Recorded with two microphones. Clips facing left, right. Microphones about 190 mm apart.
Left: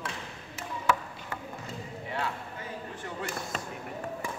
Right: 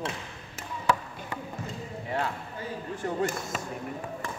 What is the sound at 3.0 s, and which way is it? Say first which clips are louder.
Speech: right 11 dB; 40° right (ahead or behind).